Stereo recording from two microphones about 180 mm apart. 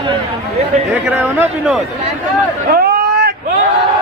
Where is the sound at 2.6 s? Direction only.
60° right (ahead or behind).